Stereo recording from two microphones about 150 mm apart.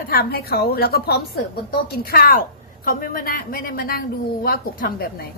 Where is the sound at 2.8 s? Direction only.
70° left (ahead or behind).